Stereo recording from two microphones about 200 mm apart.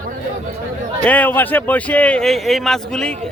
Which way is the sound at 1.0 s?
5° left (ahead or behind).